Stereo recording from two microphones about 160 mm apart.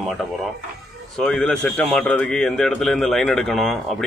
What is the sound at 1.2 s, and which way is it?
Speech, centre (ahead or behind).